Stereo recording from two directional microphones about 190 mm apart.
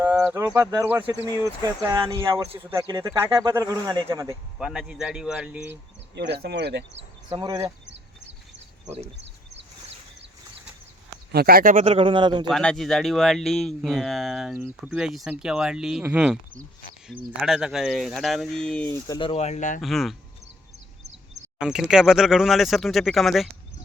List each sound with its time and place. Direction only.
0.0 s bird: 10° right (ahead or behind)
0.4 s speech: 15° right (ahead or behind)
4.5 s speech: centre (ahead or behind)
6.1 s speech: 60° right (ahead or behind)
7.3 s speech: 20° right (ahead or behind)
9.1 s a sound: 70° right (ahead or behind)
11.3 s speech: 55° right (ahead or behind)
11.8 s speech: 30° right (ahead or behind)
12.5 s speech: centre (ahead or behind)
19.0 s speech: 25° left (ahead or behind); by 19.8 s 40° left (ahead or behind)
19.8 s speech: centre (ahead or behind)
21.6 s speech: 5° right (ahead or behind)